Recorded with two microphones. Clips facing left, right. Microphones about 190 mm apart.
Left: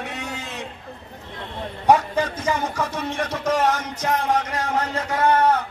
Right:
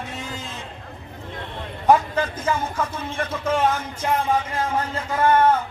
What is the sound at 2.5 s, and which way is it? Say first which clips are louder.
Speech: left 1 dB; 70° left (ahead or behind).